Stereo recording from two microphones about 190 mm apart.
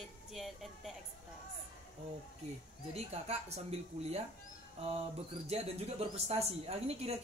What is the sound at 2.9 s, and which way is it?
Speech, 35° right (ahead or behind).